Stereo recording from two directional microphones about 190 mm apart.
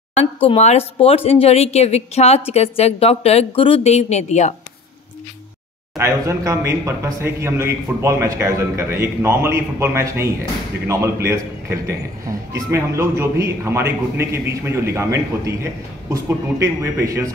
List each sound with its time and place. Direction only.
0.5 s a woman's voice: 35° left (ahead or behind)
5.9 s a man's voice: 15° right (ahead or behind)